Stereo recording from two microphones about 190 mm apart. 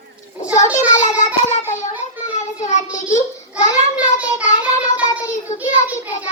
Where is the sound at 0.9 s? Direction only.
40° left (ahead or behind).